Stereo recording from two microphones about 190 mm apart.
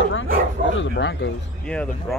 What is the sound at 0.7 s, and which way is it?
Speech, 65° left (ahead or behind).